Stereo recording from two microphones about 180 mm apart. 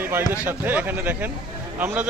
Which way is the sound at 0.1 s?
10° right (ahead or behind).